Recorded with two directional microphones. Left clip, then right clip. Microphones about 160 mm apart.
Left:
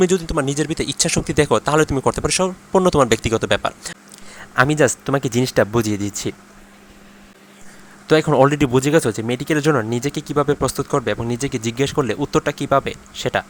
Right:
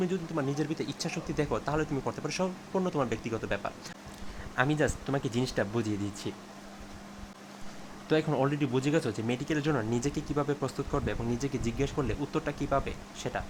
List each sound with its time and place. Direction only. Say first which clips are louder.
0.0 s speech: left 15 dB; 50° left (ahead or behind)
0.4 s speech: left 11 dB; 30° left (ahead or behind)
8.0 s speech: left 14 dB; 35° left (ahead or behind)
9.9 s speech: left 11 dB; 25° left (ahead or behind)